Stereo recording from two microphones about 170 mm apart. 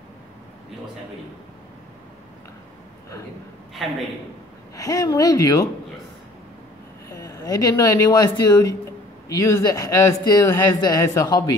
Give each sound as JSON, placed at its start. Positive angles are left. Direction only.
{"t": 4.7, "sound": "a man's voice", "side_deg": 20}
{"t": 7.1, "sound": "a man's voice", "side_deg": 20}